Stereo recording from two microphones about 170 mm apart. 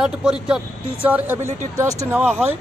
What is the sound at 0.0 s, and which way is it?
Speech, 5° right (ahead or behind).